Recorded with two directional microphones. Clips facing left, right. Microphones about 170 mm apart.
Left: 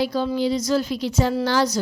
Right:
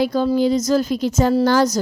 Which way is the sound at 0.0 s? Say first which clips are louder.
Right 5 dB; 50° right (ahead or behind).